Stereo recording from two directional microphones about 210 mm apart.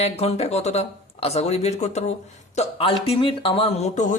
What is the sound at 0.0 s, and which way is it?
Speech, 30° left (ahead or behind).